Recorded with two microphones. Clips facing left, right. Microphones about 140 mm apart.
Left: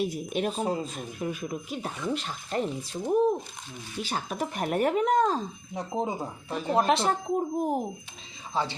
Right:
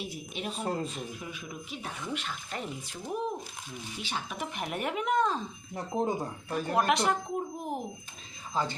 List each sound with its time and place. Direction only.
0.0 s speech: 45° left (ahead or behind)
0.6 s speech: 5° left (ahead or behind)
0.9 s speech: 45° left (ahead or behind)
5.7 s speech: 5° left (ahead or behind)
6.5 s speech: 25° left (ahead or behind); by 7.8 s 40° left (ahead or behind)